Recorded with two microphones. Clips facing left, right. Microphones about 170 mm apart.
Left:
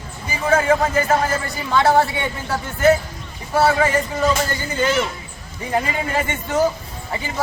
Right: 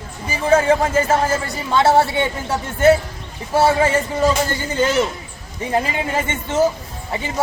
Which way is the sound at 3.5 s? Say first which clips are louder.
Right 1 dB; 25° right (ahead or behind).